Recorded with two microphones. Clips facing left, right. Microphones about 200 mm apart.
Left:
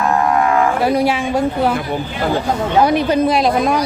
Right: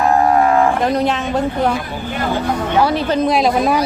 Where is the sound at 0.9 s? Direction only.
10° left (ahead or behind).